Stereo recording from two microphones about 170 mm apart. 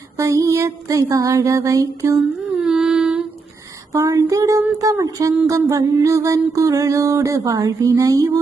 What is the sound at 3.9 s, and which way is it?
Music, 20° right (ahead or behind).